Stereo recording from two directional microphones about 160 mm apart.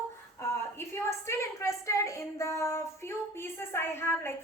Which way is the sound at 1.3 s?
20° left (ahead or behind).